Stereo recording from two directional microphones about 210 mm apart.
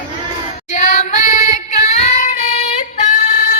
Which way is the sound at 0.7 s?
35° left (ahead or behind).